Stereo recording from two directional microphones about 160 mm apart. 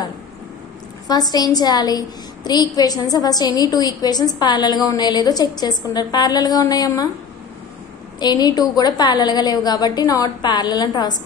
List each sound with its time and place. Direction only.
1.0 s a woman's voice: 25° left (ahead or behind)
8.2 s a woman's voice: 25° left (ahead or behind)